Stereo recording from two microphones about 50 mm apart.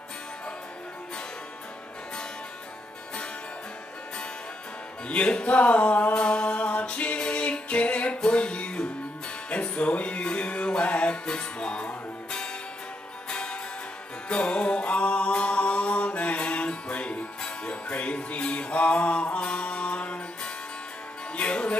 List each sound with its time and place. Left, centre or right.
5.0 s music: left